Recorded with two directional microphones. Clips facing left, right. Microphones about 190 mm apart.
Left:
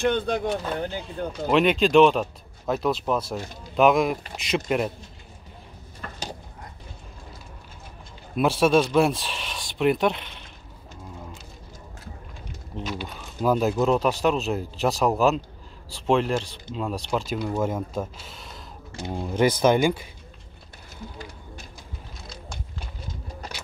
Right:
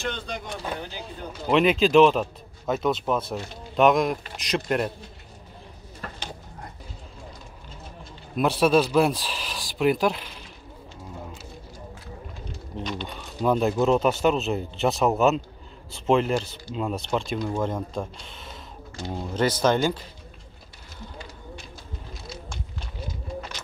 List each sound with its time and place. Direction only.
0.0 s speech: 55° left (ahead or behind)
1.5 s speech: centre (ahead or behind)
8.4 s speech: centre (ahead or behind)
12.7 s speech: 5° left (ahead or behind)
18.9 s speech: 15° left (ahead or behind)